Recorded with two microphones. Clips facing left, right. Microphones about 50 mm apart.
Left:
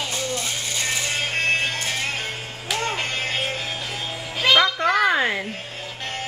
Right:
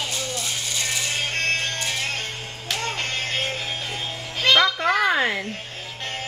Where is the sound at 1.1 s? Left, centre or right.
Centre.